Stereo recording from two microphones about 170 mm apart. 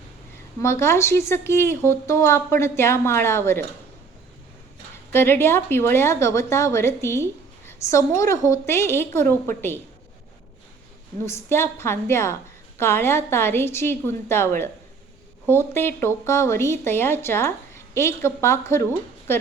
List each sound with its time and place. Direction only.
0.6 s a woman's voice: 15° left (ahead or behind)
5.1 s a woman's voice: 15° left (ahead or behind)
11.3 s a woman's voice: 15° left (ahead or behind)